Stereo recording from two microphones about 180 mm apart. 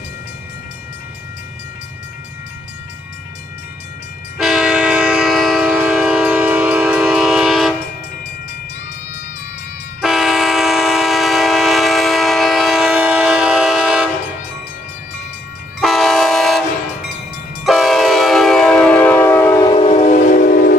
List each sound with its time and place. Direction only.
4.4 s train: 5° right (ahead or behind)
10.0 s train: centre (ahead or behind)
15.8 s train: centre (ahead or behind)
17.6 s train: centre (ahead or behind)
19.6 s train: 25° left (ahead or behind)
19.9 s train: 45° left (ahead or behind)